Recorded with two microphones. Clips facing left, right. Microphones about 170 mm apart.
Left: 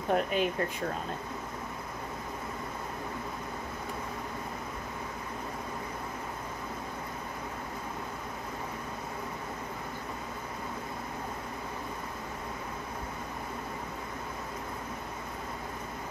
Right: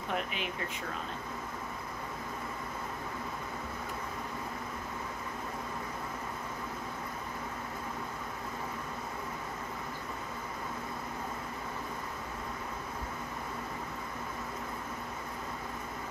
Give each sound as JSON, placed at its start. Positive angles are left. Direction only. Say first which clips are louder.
{"t": 0.1, "sound": "speech", "louder": "left 9 dB", "side_deg": 45}